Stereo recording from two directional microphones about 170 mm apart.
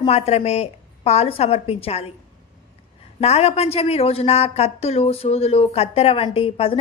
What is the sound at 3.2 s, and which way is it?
A woman's voice, 40° left (ahead or behind).